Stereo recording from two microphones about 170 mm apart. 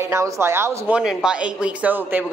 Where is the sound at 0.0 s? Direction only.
15° right (ahead or behind).